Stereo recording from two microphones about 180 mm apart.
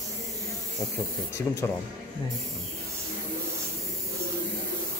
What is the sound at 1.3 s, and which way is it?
Speech, 15° left (ahead or behind).